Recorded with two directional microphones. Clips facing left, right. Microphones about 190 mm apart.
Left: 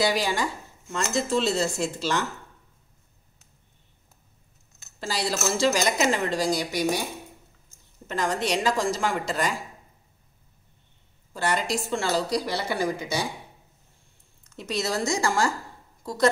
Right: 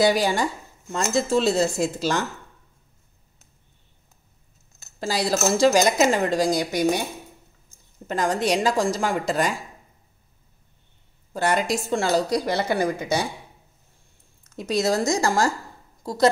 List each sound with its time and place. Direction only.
0.0 s a woman's voice: 45° right (ahead or behind)
5.0 s a woman's voice: 40° right (ahead or behind)
8.1 s speech: 40° right (ahead or behind)
11.5 s a woman's voice: 45° right (ahead or behind)
14.5 s speech: 40° right (ahead or behind)